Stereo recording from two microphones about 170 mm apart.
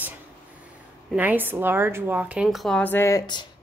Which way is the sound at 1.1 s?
10° right (ahead or behind).